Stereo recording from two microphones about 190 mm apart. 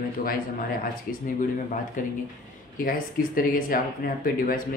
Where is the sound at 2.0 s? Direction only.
45° left (ahead or behind).